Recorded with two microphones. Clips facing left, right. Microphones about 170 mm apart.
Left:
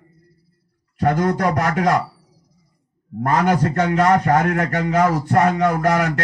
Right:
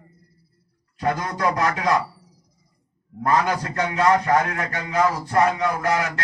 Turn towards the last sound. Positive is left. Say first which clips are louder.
# left 5 dB
turn(degrees=45)  # may be behind; listen again after turning